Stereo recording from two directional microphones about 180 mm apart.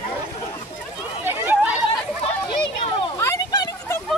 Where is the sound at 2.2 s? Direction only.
35° left (ahead or behind).